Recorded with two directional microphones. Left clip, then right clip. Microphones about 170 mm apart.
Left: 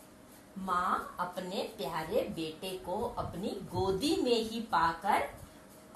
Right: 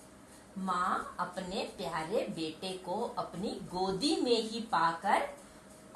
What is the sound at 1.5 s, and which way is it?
A woman's voice, 10° right (ahead or behind).